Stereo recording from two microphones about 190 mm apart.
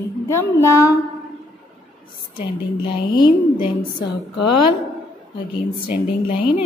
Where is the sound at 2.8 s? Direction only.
25° left (ahead or behind).